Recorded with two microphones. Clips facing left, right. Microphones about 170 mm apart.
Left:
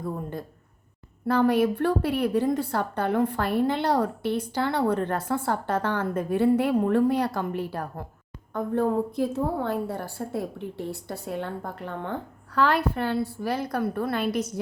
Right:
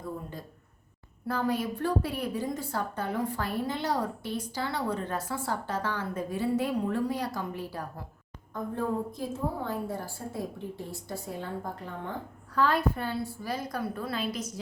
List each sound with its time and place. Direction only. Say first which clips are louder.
1.3 s a woman's voice: left 8 dB; 70° left (ahead or behind)